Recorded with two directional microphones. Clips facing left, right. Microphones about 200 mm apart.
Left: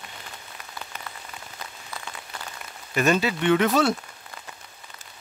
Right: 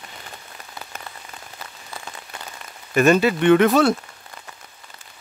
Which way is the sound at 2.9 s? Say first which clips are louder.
Right 6 dB; 55° right (ahead or behind).